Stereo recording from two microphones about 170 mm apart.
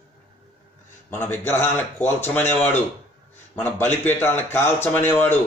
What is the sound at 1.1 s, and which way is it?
A man's voice, 10° left (ahead or behind).